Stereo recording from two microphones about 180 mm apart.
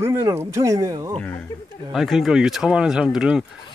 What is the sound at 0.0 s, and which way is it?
Speech, 15° right (ahead or behind).